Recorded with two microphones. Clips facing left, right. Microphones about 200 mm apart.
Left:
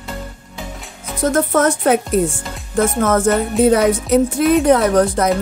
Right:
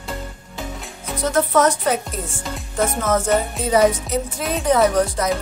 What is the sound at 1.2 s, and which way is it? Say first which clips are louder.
Speech: left 2 dB; 50° left (ahead or behind).